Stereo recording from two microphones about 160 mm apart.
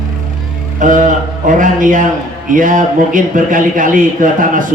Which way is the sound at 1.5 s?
55° right (ahead or behind).